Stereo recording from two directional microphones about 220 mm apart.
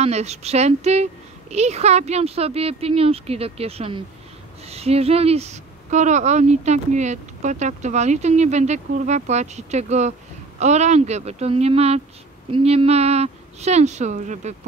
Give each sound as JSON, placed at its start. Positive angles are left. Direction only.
{"t": 0.0, "sound": "a woman's voice", "side_deg": -30}